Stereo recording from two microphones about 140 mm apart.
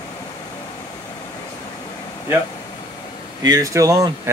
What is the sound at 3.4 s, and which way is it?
Speech, 25° right (ahead or behind).